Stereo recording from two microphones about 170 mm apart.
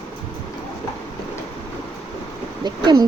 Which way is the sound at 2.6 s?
25° right (ahead or behind).